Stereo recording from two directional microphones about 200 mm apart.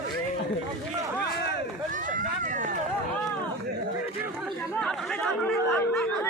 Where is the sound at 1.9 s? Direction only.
40° right (ahead or behind).